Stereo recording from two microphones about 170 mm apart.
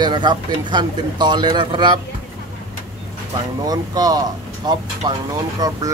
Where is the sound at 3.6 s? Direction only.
20° right (ahead or behind).